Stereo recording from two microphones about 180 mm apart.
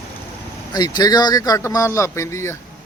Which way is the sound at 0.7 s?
25° left (ahead or behind).